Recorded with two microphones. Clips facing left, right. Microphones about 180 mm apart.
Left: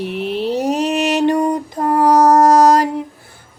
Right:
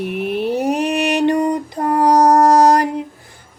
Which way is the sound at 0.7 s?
15° right (ahead or behind).